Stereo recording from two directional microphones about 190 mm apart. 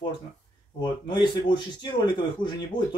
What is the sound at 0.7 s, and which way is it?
Speech, 25° left (ahead or behind).